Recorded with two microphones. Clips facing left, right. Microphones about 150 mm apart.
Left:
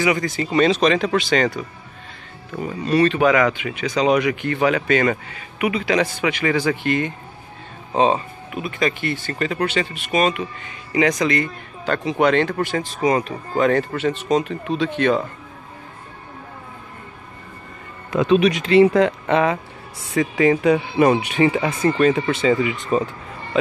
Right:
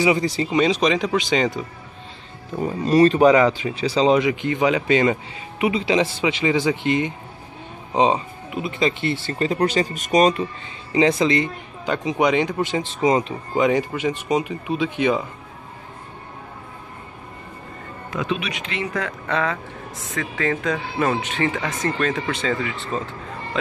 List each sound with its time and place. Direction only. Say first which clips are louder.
0.5 s speech: left 3 dB; 15° right (ahead or behind)
2.6 s speech: right 2 dB; 40° right (ahead or behind)
10.9 s speech: right 1 dB; 25° right (ahead or behind)
18.1 s speech: left 10 dB; 35° left (ahead or behind)
18.9 s speech: left 8 dB; 20° left (ahead or behind); by 23.7 s 5° left (ahead or behind)